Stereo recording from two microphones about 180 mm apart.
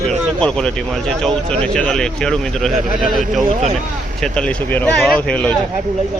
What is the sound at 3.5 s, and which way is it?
Speech, 35° right (ahead or behind).